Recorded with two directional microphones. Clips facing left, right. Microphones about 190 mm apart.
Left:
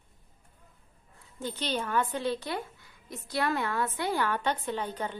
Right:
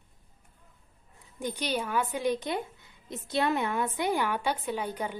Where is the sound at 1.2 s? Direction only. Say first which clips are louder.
Right 2 dB; 15° right (ahead or behind).